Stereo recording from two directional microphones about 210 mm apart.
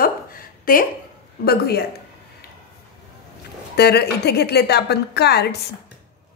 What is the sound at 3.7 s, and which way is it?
A woman's voice, 50° left (ahead or behind).